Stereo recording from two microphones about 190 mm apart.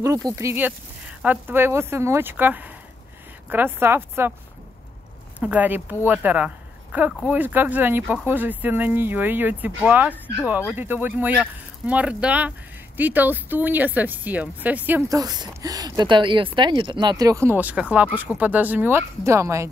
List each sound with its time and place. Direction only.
0.0 s speech: 20° right (ahead or behind)
5.4 s speech: 10° right (ahead or behind)